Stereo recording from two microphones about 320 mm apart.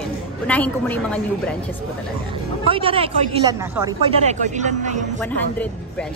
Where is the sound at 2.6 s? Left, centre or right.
Centre.